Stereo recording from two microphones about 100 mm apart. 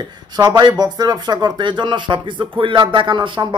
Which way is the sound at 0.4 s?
45° right (ahead or behind).